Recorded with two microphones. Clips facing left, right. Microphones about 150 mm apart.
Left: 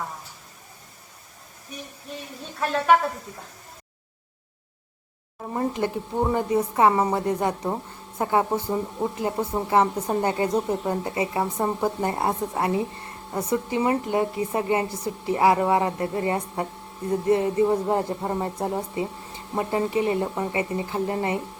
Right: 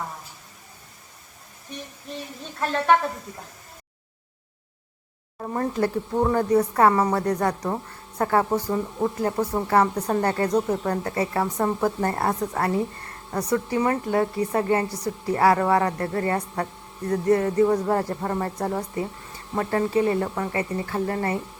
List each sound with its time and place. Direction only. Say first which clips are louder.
2.6 s a woman's voice: left 1 dB; 5° left (ahead or behind)
5.7 s a woman's voice: right 2 dB; 20° left (ahead or behind)